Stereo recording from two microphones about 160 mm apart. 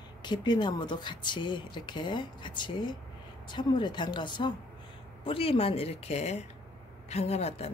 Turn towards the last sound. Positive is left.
turn(degrees=40)  # may be behind; listen again after turning